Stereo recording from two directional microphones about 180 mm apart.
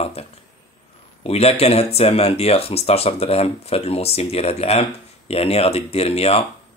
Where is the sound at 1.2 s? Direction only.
35° left (ahead or behind).